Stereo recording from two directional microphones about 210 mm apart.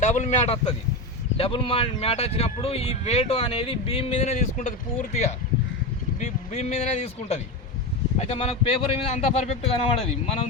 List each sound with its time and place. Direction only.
0.0 s speech: 35° left (ahead or behind)